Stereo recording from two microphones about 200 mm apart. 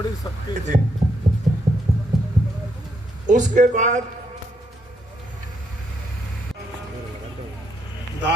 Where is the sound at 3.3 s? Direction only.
40° right (ahead or behind).